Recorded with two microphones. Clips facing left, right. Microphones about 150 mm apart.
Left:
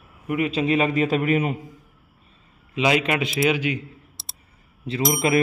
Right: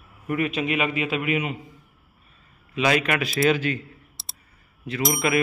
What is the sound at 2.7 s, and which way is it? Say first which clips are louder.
A man's voice: left 1 dB; 20° left (ahead or behind).